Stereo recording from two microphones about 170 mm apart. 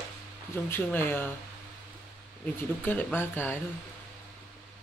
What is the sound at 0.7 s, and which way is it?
Speech, 10° left (ahead or behind).